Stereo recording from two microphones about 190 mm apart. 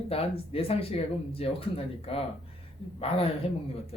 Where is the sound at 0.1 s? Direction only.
30° left (ahead or behind).